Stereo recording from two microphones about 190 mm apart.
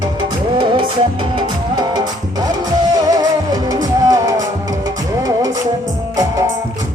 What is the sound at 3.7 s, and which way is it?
Music, 20° right (ahead or behind).